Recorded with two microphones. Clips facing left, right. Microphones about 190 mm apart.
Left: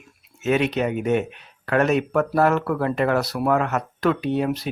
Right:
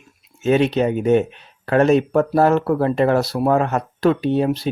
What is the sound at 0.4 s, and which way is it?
Speech, 30° right (ahead or behind).